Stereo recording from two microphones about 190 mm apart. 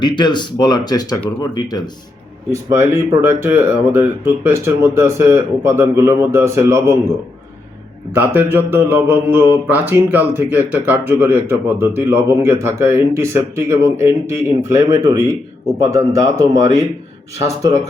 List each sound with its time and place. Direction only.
0.0 s speech: 25° left (ahead or behind)
2.5 s speech: 15° right (ahead or behind)
8.1 s speech: 10° right (ahead or behind)